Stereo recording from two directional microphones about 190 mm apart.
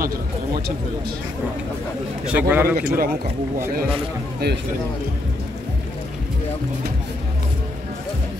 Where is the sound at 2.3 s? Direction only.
10° right (ahead or behind).